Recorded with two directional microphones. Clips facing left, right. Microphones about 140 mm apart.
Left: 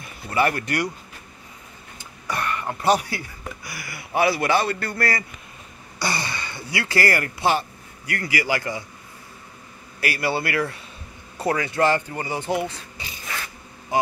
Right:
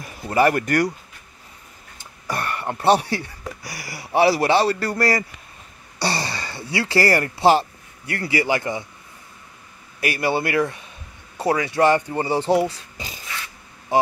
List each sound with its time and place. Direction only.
0.0 s speech: 40° right (ahead or behind)
2.2 s a sound: 45° right (ahead or behind)
2.6 s a man's voice: 30° right (ahead or behind)
9.9 s a man's voice: 20° right (ahead or behind)
12.2 s speech: 30° right (ahead or behind)